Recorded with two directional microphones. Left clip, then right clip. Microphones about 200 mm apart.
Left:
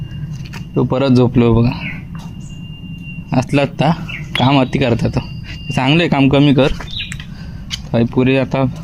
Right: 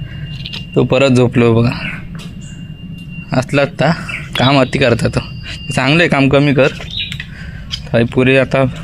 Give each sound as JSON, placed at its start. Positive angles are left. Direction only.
{"t": 0.7, "sound": "speech", "side_deg": -10}
{"t": 1.2, "sound": "speech", "side_deg": 10}
{"t": 3.2, "sound": "speech", "side_deg": 15}
{"t": 6.4, "sound": "speech", "side_deg": 20}
{"t": 7.9, "sound": "speech", "side_deg": 5}